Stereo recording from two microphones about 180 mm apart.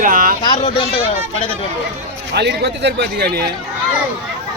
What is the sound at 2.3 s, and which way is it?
Speech, 70° right (ahead or behind).